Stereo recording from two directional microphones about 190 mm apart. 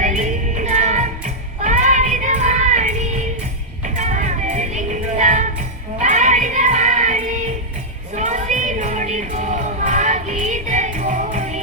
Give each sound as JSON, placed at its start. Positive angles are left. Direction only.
{"t": 0.0, "sound": "music", "side_deg": -40}